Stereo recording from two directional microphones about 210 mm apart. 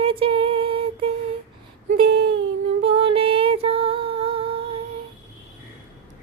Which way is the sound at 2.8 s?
25° right (ahead or behind).